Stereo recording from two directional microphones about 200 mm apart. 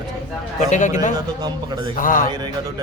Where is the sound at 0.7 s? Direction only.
35° left (ahead or behind).